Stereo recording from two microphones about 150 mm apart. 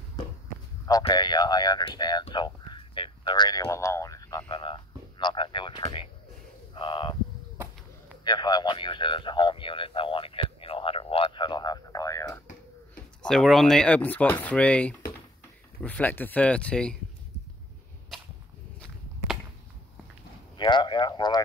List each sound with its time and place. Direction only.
1.0 s speech: 30° left (ahead or behind)
2.3 s a sound: 30° left (ahead or behind)
3.6 s speech: 20° left (ahead or behind)
8.2 s a man's voice: 30° left (ahead or behind)
13.2 s speech: centre (ahead or behind)
20.5 s speech: 30° left (ahead or behind)